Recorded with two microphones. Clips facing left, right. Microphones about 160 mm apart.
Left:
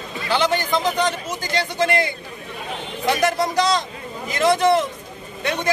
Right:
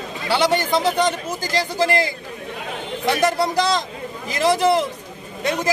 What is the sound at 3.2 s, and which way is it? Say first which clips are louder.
Speech: right 1 dB; 35° right (ahead or behind).